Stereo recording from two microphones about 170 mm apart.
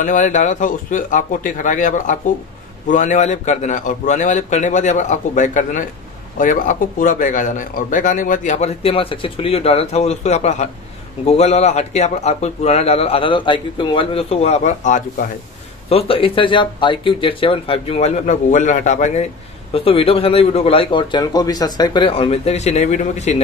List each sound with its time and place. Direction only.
0.0 s a man's voice: 45° left (ahead or behind)
15.9 s speech: 35° left (ahead or behind)
19.7 s speech: 35° left (ahead or behind)